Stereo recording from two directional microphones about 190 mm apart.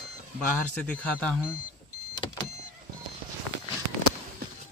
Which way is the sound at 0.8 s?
5° left (ahead or behind).